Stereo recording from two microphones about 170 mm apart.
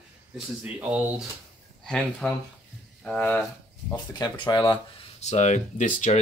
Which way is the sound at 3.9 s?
25° left (ahead or behind).